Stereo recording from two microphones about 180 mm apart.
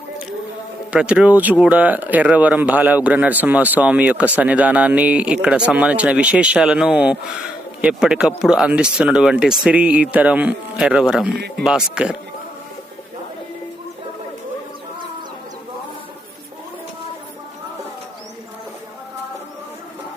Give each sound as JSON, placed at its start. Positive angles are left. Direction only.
{"t": 0.9, "sound": "speech", "side_deg": -5}
{"t": 11.3, "sound": "speech", "side_deg": -65}
{"t": 11.6, "sound": "speech", "side_deg": -5}